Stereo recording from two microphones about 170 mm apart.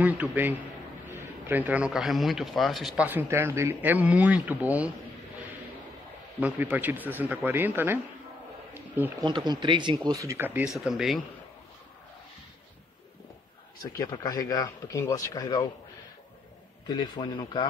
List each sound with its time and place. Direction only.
0.0 s a man's voice: 10° right (ahead or behind)
3.1 s speech: 15° right (ahead or behind)
6.4 s speech: 10° right (ahead or behind)
9.2 s speech: 25° right (ahead or behind); by 11.2 s centre (ahead or behind)
13.9 s speech: 20° left (ahead or behind)
16.8 s speech: 25° left (ahead or behind)